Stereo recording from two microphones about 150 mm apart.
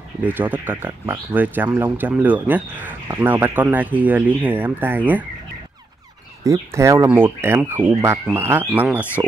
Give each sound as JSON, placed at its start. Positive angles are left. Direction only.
{"t": 0.2, "sound": "speech", "side_deg": -10}
{"t": 6.4, "sound": "speech", "side_deg": -20}